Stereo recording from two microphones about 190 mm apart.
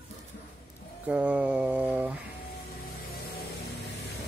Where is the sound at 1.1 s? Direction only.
5° right (ahead or behind).